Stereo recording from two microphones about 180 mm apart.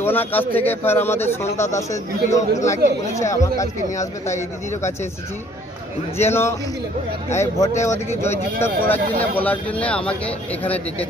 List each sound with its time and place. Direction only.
0.0 s speech: 10° left (ahead or behind)
6.1 s speech: 15° left (ahead or behind)